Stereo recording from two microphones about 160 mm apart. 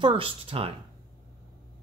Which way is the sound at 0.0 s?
35° right (ahead or behind).